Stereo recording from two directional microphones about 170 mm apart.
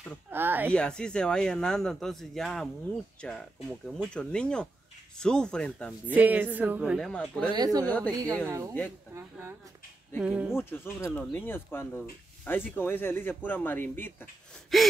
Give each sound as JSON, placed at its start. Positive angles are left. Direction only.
{"t": 0.3, "sound": "speech", "side_deg": -10}
{"t": 0.7, "sound": "speech", "side_deg": 5}
{"t": 6.0, "sound": "speech", "side_deg": -10}
{"t": 7.1, "sound": "speech", "side_deg": 5}
{"t": 7.5, "sound": "a woman's voice", "side_deg": -20}
{"t": 7.8, "sound": "speech", "side_deg": 10}
{"t": 8.1, "sound": "a woman's voice", "side_deg": -20}
{"t": 10.5, "sound": "speech", "side_deg": 15}
{"t": 14.7, "sound": "speech", "side_deg": 0}